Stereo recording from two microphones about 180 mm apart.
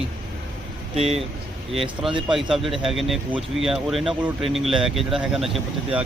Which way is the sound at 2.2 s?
Centre (ahead or behind).